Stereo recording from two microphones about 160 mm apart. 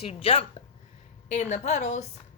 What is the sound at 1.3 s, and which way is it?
Speech, 45° left (ahead or behind).